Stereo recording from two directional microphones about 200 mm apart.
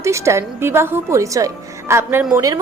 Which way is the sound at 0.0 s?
15° right (ahead or behind).